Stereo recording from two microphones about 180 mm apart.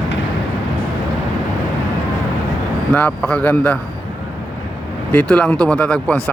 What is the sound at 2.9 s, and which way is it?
Speech, 5° left (ahead or behind).